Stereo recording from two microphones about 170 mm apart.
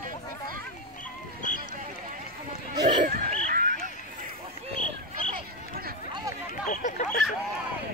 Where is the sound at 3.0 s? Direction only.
55° right (ahead or behind).